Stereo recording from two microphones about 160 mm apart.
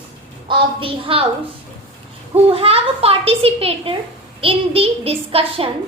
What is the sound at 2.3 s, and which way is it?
A woman's voice, 40° right (ahead or behind).